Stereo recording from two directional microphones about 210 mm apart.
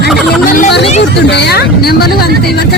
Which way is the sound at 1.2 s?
55° left (ahead or behind).